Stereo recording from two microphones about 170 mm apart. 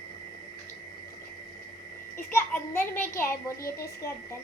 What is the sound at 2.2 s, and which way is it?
A child's voice, 15° left (ahead or behind).